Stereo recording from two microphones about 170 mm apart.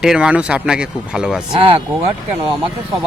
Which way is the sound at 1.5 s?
35° right (ahead or behind).